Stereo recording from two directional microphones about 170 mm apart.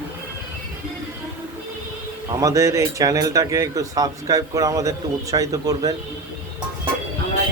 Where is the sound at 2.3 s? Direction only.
20° right (ahead or behind).